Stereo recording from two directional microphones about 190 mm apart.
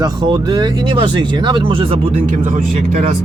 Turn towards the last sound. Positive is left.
turn(degrees=-40)  # may be behind; listen again after turning